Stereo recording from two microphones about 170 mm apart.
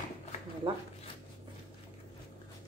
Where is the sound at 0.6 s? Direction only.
30° right (ahead or behind).